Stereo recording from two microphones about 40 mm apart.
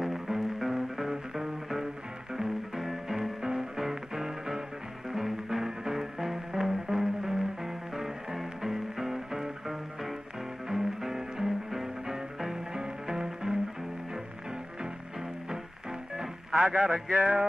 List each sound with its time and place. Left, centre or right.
0.0 s music: centre
16.5 s a man's voice: centre